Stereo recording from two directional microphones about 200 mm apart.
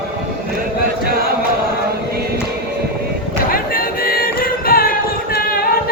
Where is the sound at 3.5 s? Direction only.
45° left (ahead or behind).